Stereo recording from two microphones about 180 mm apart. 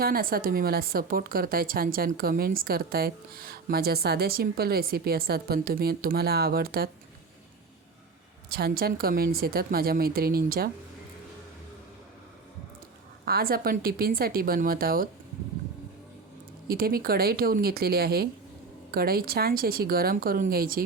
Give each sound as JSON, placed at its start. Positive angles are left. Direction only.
{"t": 0.0, "sound": "speech", "side_deg": -55}
{"t": 8.4, "sound": "speech", "side_deg": -55}
{"t": 13.2, "sound": "speech", "side_deg": -55}
{"t": 16.6, "sound": "speech", "side_deg": -55}